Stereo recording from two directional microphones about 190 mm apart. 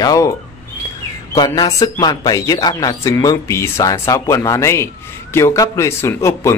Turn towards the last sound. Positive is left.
turn(degrees=15)  # may be behind; listen again after turning